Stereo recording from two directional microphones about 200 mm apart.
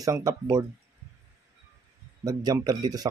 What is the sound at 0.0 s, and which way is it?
Speech, 15° right (ahead or behind).